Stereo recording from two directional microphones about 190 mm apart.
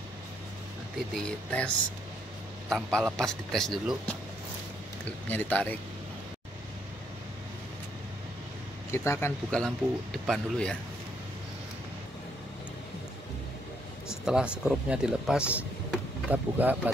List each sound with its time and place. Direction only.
1.1 s speech: 5° left (ahead or behind)
2.7 s speech: centre (ahead or behind)
5.0 s speech: 10° left (ahead or behind)
8.9 s speech: 15° left (ahead or behind)
14.2 s speech: 5° right (ahead or behind)